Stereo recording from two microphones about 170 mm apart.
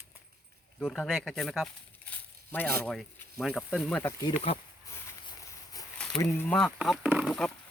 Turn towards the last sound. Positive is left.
turn(degrees=0)  # may be behind; listen again after turning